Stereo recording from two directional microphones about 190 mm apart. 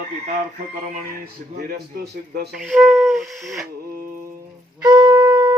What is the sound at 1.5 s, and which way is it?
A man's voice, 50° right (ahead or behind).